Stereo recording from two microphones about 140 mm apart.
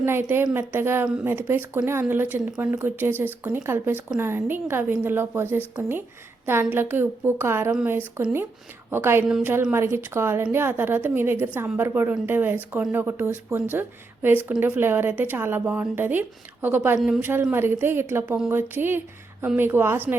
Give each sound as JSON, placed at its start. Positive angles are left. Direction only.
{"t": 0.0, "sound": "speech", "side_deg": -15}